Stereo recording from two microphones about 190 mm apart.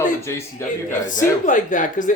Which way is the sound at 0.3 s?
15° left (ahead or behind).